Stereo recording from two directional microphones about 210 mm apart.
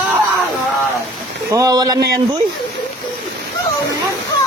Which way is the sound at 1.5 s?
15° right (ahead or behind).